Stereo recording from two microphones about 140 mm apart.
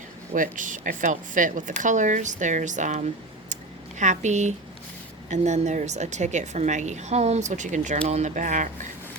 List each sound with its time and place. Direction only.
0.3 s a woman's voice: 70° right (ahead or behind)
3.5 s a sound: 60° right (ahead or behind)
5.3 s a woman's voice: 60° right (ahead or behind)